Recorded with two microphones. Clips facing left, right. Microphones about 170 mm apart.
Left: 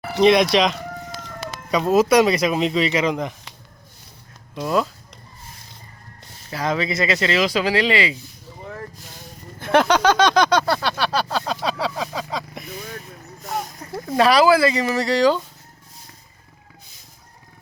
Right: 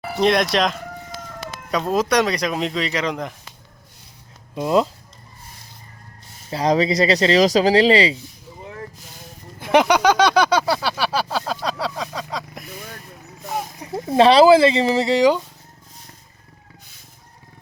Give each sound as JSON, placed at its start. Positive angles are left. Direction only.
{"t": 0.2, "sound": "speech", "side_deg": 0}
{"t": 4.6, "sound": "speech", "side_deg": -25}
{"t": 6.5, "sound": "speech", "side_deg": -30}
{"t": 9.6, "sound": "a sound", "side_deg": -10}
{"t": 11.6, "sound": "a sound", "side_deg": 0}
{"t": 13.5, "sound": "speech", "side_deg": -10}
{"t": 14.1, "sound": "speech", "side_deg": -25}